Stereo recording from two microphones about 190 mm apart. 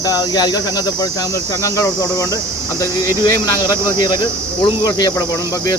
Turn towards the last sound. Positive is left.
turn(degrees=20)  # may be behind; listen again after turning